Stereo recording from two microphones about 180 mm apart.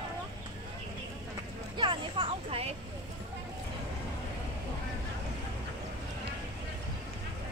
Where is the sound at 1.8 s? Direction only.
25° right (ahead or behind).